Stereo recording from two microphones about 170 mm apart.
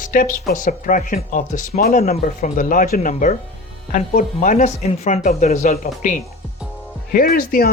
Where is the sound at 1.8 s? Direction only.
60° left (ahead or behind); by 5.7 s 40° left (ahead or behind).